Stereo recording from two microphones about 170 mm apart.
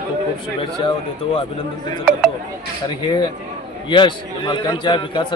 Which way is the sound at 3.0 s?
25° left (ahead or behind).